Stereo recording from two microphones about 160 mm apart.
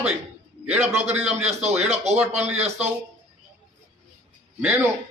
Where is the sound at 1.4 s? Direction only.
45° right (ahead or behind).